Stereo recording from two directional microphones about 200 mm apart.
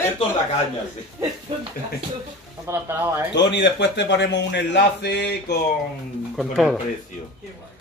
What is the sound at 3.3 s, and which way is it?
A man's voice, 60° left (ahead or behind).